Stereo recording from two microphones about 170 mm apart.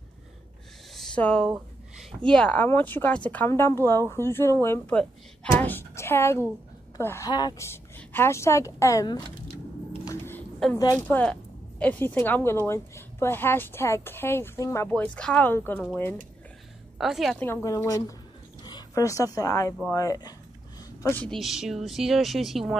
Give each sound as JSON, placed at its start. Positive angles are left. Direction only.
{"t": 0.9, "sound": "speech", "side_deg": 5}
{"t": 10.0, "sound": "a sound", "side_deg": 15}
{"t": 10.6, "sound": "speech", "side_deg": 0}
{"t": 17.4, "sound": "a woman's voice", "side_deg": 15}